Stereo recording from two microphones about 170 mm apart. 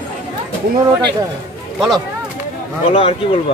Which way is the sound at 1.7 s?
Centre (ahead or behind).